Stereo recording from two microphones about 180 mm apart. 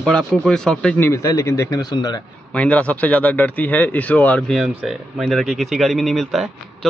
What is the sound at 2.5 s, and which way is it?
Speech, 5° left (ahead or behind).